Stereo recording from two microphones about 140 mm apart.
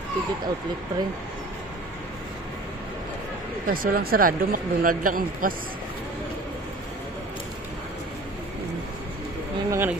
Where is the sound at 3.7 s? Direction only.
90° right.